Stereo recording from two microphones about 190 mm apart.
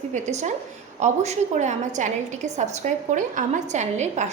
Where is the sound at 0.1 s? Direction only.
40° right (ahead or behind).